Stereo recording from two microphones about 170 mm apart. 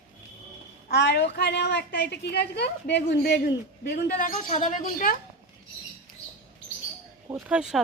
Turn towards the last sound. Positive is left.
turn(degrees=-5)  # may be behind; listen again after turning